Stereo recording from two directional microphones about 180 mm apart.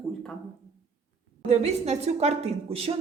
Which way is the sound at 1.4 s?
40° right (ahead or behind).